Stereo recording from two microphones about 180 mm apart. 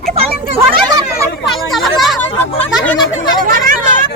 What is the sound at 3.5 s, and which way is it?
Hubbub, 50° right (ahead or behind).